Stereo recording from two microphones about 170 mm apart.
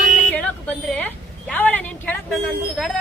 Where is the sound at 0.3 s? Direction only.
5° left (ahead or behind).